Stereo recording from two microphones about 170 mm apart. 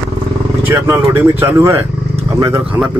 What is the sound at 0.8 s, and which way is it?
Speech, 15° right (ahead or behind).